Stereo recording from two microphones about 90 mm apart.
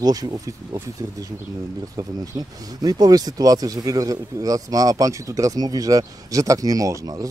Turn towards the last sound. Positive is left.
turn(degrees=-40)  # may be behind; listen again after turning